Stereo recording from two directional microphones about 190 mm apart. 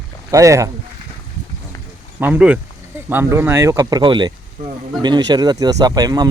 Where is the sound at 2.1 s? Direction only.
10° right (ahead or behind).